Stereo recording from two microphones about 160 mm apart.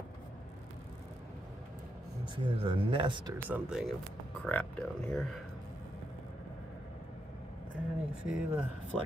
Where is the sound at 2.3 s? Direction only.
30° right (ahead or behind).